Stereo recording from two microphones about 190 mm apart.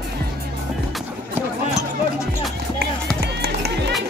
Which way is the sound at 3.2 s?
55° right (ahead or behind).